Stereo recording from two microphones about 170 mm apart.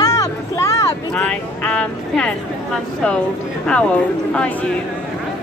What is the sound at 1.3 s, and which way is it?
Speech, 5° left (ahead or behind).